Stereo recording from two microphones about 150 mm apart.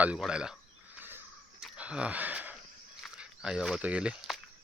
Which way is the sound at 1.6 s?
5° right (ahead or behind).